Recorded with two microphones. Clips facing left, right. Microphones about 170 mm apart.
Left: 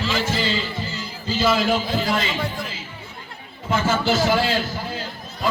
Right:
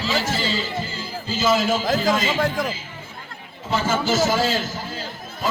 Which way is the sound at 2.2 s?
45° right (ahead or behind).